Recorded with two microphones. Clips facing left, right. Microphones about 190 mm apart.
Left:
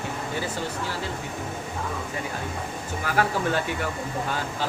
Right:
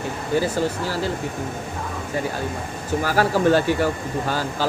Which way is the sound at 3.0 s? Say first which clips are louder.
Right 6 dB; 35° right (ahead or behind).